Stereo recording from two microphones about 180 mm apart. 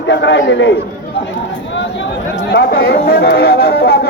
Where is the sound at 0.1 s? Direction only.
80° left.